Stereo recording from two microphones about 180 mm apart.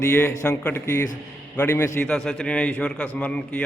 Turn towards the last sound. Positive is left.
turn(degrees=10)  # may be behind; listen again after turning